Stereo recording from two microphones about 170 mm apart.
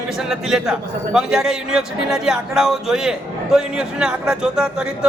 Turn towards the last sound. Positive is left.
turn(degrees=-5)  # may be behind; listen again after turning